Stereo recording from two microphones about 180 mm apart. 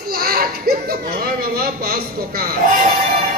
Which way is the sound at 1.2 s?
60° right (ahead or behind).